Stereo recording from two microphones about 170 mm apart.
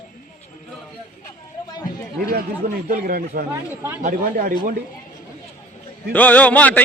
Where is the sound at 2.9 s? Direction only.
60° right (ahead or behind).